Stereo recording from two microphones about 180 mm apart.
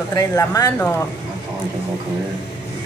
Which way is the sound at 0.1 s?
20° left (ahead or behind).